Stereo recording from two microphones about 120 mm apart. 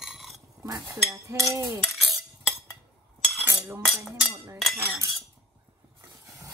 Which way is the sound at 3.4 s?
20° right (ahead or behind).